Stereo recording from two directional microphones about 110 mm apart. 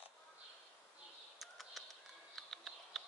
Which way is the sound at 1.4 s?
Centre (ahead or behind).